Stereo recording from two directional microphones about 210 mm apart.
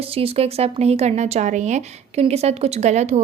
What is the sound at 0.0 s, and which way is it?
Speech, 25° right (ahead or behind).